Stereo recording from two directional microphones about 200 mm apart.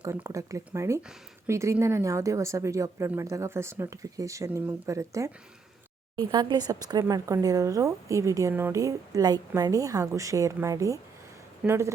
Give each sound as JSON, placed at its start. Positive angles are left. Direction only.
{"t": 0.0, "sound": "speech", "side_deg": -15}